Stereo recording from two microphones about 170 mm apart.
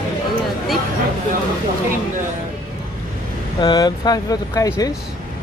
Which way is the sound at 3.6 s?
25° left (ahead or behind).